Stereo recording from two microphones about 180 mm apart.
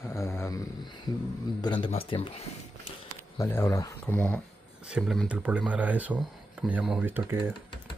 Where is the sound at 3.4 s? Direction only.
15° left (ahead or behind).